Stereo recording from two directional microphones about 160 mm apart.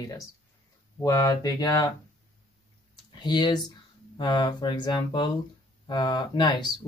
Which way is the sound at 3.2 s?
30° left (ahead or behind).